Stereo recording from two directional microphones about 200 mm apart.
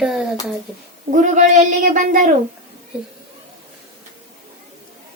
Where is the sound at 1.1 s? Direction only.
40° right (ahead or behind).